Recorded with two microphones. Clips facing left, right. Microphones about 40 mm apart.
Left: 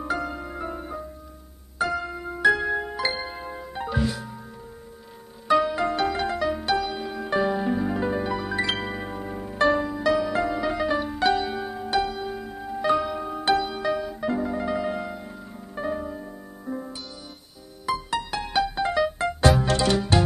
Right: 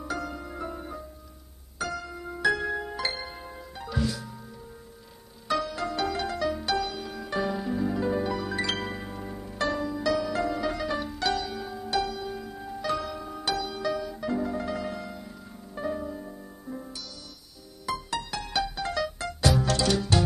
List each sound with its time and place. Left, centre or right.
0.0 s music: left
5.5 s music: left